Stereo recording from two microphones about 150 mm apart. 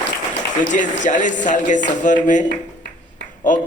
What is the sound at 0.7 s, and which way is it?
A man's voice, 55° left (ahead or behind).